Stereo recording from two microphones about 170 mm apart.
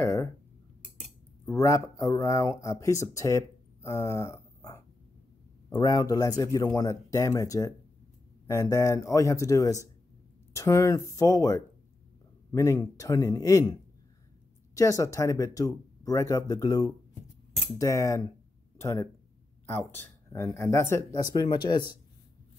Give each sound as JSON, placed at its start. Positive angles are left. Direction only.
{"t": 0.0, "sound": "a sound", "side_deg": 15}
{"t": 1.4, "sound": "speech", "side_deg": 15}
{"t": 14.8, "sound": "speech", "side_deg": 20}